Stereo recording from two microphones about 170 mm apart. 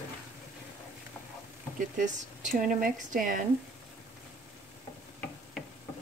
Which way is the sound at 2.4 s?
55° right (ahead or behind).